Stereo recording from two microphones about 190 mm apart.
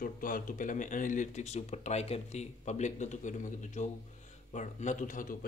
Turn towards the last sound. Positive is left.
turn(degrees=45)  # may be behind; listen again after turning